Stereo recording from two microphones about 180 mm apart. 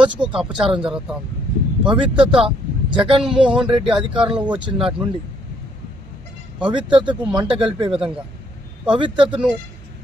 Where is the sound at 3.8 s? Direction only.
5° right (ahead or behind).